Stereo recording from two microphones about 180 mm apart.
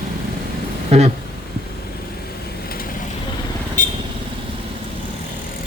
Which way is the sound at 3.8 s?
50° left (ahead or behind).